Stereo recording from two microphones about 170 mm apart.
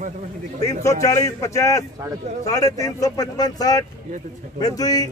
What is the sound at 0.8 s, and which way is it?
A man's voice, 15° left (ahead or behind).